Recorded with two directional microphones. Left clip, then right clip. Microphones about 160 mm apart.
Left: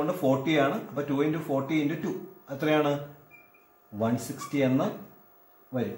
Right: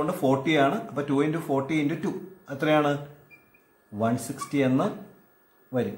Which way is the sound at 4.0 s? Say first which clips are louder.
Right 2 dB; 25° right (ahead or behind).